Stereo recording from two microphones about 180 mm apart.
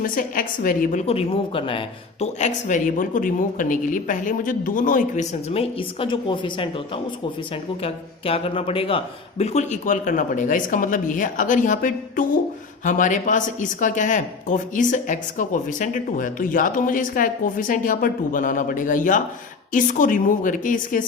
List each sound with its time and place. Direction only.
0.0 s speech: 50° left (ahead or behind)
1.0 s speech: 35° left (ahead or behind); by 5.2 s 50° left (ahead or behind)
5.5 s a woman's voice: 30° left (ahead or behind); by 21.0 s 50° left (ahead or behind)